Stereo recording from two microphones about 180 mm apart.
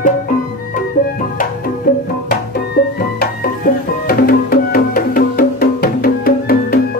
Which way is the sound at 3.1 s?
55° left (ahead or behind).